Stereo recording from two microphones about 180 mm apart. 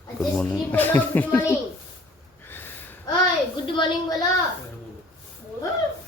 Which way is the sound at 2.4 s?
10° left (ahead or behind).